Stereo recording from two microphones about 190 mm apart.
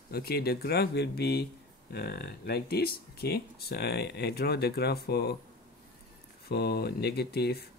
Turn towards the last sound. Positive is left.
turn(degrees=55)  # may be behind; listen again after turning